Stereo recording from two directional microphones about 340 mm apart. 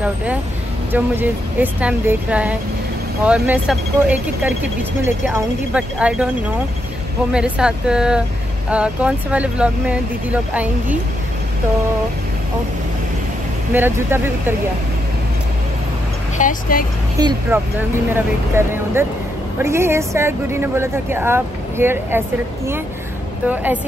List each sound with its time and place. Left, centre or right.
0.0 s vehicle: centre
0.9 s speech: centre
7.3 s speech: centre
13.7 s speech: centre
16.3 s speech: left
17.2 s speech: centre
23.5 s speech: centre